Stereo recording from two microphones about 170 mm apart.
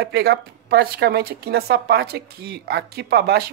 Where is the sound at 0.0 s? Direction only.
70° right (ahead or behind).